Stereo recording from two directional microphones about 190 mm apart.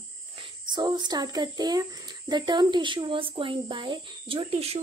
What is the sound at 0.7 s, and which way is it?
Speech, 25° right (ahead or behind).